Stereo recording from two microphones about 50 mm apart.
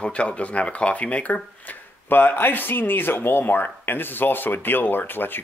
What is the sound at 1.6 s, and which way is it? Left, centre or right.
Speech, left.